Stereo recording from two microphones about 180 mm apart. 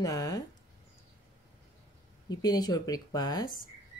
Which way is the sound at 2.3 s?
20° left (ahead or behind).